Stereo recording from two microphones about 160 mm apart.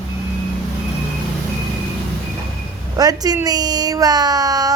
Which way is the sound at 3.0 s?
25° right (ahead or behind).